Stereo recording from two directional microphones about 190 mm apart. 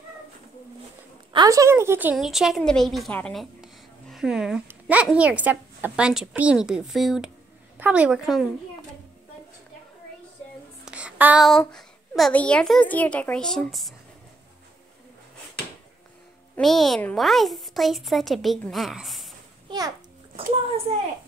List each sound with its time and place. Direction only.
1.3 s a woman's voice: 20° right (ahead or behind); by 8.5 s 5° right (ahead or behind)
10.9 s child singing: 5° right (ahead or behind)
11.7 s a woman's voice: 5° left (ahead or behind)
16.5 s a woman's voice: centre (ahead or behind)
19.7 s a child's voice: 25° right (ahead or behind)